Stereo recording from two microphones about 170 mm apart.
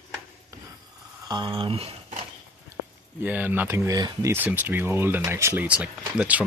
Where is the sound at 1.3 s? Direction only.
25° right (ahead or behind).